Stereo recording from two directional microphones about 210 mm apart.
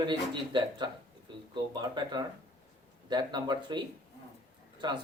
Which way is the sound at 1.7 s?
20° right (ahead or behind).